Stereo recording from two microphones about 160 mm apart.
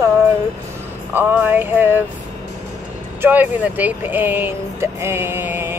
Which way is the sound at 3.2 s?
10° right (ahead or behind).